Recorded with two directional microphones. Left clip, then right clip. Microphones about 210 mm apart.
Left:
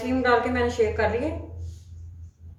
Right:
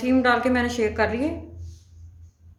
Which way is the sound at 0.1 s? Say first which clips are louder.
Right 2 dB; 55° right (ahead or behind).